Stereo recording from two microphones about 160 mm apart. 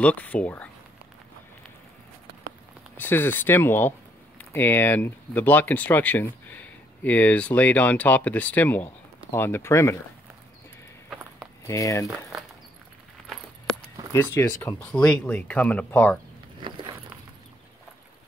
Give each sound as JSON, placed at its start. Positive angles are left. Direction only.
{"t": 0.0, "sound": "speech", "side_deg": 10}
{"t": 3.0, "sound": "speech", "side_deg": 15}
{"t": 11.1, "sound": "walk", "side_deg": -5}
{"t": 11.6, "sound": "speech", "side_deg": 20}
{"t": 13.2, "sound": "a sound", "side_deg": 5}
{"t": 14.1, "sound": "speech", "side_deg": 15}
{"t": 16.6, "sound": "a sound", "side_deg": -30}